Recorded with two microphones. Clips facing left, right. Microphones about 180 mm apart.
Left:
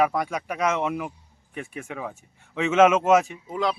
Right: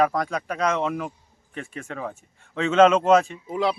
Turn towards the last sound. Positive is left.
turn(degrees=-5)  # may be behind; listen again after turning